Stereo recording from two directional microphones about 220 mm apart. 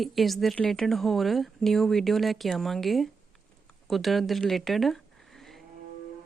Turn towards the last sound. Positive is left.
turn(degrees=0)  # may be behind; listen again after turning